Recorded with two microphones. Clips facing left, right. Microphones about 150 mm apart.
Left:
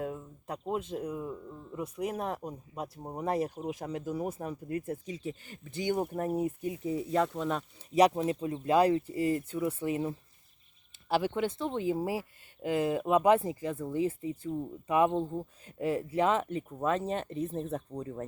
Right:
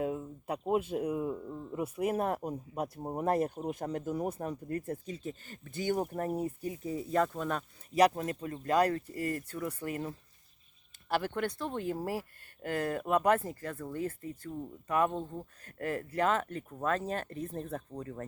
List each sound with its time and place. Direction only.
0.0 s speech: 10° right (ahead or behind)
3.7 s speech: 45° right (ahead or behind)
4.0 s speech: 5° left (ahead or behind)
7.2 s speech: centre (ahead or behind)
11.3 s speech: 5° left (ahead or behind)